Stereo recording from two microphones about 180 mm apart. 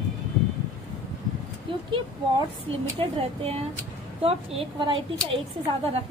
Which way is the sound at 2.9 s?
35° right (ahead or behind).